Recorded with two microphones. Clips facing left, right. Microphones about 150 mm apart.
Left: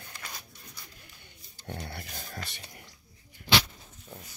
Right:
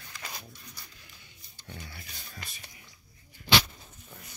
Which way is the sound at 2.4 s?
75° left (ahead or behind).